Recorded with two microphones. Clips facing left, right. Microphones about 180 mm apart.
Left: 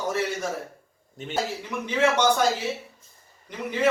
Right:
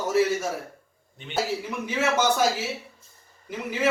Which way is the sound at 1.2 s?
45° left (ahead or behind).